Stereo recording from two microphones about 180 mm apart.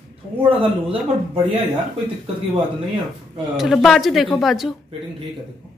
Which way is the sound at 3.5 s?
Centre (ahead or behind).